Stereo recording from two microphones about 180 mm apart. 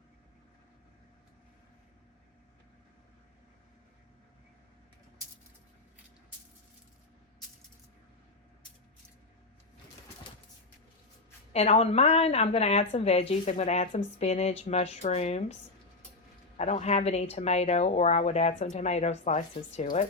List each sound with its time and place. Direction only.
11.5 s speech: 35° left (ahead or behind)
16.6 s speech: 40° left (ahead or behind)